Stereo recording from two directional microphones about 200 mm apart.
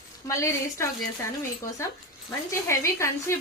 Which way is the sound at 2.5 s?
15° left (ahead or behind).